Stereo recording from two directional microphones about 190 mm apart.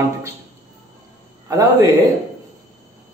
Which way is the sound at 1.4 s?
15° right (ahead or behind).